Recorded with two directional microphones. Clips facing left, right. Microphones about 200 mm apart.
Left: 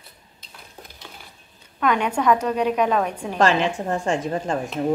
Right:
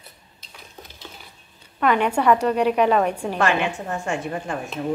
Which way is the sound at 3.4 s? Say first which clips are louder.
Left 4 dB; 35° left (ahead or behind).